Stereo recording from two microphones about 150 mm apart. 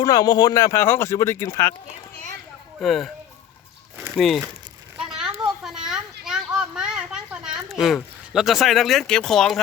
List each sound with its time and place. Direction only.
0.0 s speech: 25° left (ahead or behind)
2.8 s speech: centre (ahead or behind)
4.2 s speech: centre (ahead or behind)
4.9 s children playing: 5° right (ahead or behind)
5.4 s a sound: 5° right (ahead or behind)